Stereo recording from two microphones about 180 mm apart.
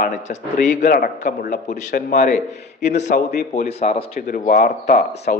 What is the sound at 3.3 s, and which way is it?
Speech, 60° left (ahead or behind).